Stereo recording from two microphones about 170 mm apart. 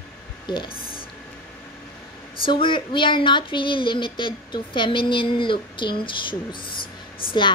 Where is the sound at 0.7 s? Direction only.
60° left (ahead or behind).